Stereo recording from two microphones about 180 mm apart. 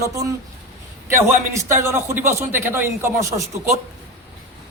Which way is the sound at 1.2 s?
15° right (ahead or behind).